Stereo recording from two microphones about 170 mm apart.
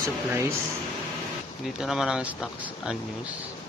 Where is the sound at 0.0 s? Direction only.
15° right (ahead or behind).